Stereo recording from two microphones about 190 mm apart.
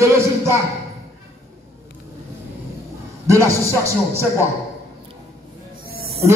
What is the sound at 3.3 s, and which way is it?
Speech, 15° right (ahead or behind).